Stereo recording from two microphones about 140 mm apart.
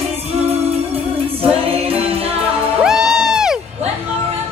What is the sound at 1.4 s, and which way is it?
A capella, 45° right (ahead or behind).